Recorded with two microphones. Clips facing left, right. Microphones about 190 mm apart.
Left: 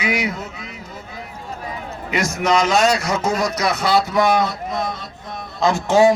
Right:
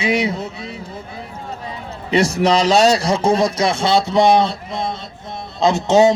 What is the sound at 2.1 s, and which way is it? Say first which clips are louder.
A man's voice: right 4 dB; 30° right (ahead or behind).